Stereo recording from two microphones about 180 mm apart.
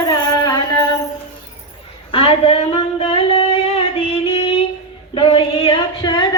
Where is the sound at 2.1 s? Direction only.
30° left (ahead or behind).